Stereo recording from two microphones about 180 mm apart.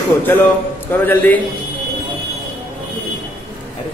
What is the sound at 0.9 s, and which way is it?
Speech, 10° left (ahead or behind).